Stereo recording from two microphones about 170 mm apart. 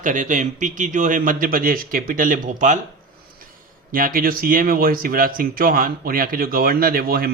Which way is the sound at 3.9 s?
55° right (ahead or behind).